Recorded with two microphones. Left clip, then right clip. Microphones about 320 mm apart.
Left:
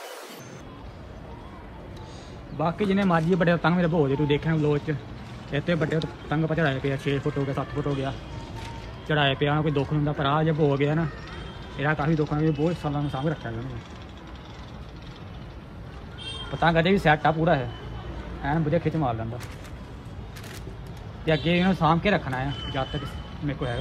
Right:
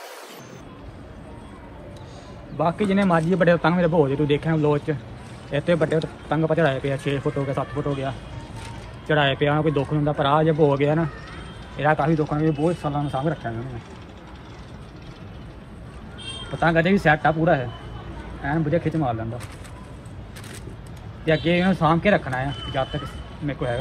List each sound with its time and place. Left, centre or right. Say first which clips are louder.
2.5 s a man's voice: right 4 dB; centre
16.5 s speech: right 2 dB; centre
21.3 s a man's voice: right 3 dB; centre